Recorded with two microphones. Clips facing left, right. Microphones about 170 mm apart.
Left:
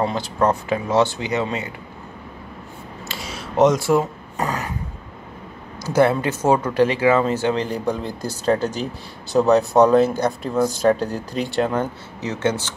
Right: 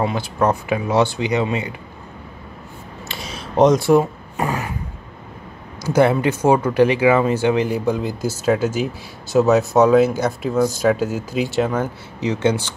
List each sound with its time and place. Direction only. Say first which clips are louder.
0.0 s speech: right 1 dB; 10° right (ahead or behind)
3.1 s a sound: even; 25° right (ahead or behind)
3.8 s speech: right 4 dB; 15° right (ahead or behind)
5.9 s speech: right 2 dB; 15° right (ahead or behind)
12.2 s speech: right 4 dB; 15° right (ahead or behind)